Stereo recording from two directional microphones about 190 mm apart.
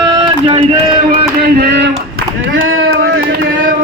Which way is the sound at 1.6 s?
60° right (ahead or behind).